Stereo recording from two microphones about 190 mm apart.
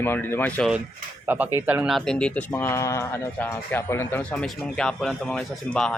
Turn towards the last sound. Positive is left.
turn(degrees=5)  # may be behind; listen again after turning